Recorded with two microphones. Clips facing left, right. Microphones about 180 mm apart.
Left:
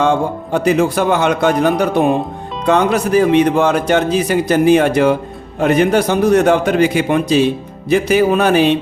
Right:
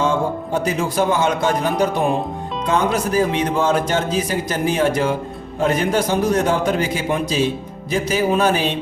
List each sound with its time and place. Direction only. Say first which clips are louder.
0.0 s a man's voice: left 4 dB; 65° left (ahead or behind)